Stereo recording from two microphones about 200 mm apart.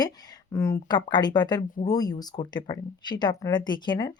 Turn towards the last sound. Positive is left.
turn(degrees=20)  # may be behind; listen again after turning